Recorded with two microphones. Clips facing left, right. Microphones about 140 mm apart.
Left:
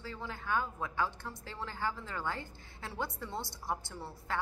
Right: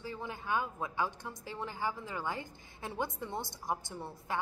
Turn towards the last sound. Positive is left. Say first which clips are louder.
# right 1 dB
turn(degrees=-20)  # may be behind; listen again after turning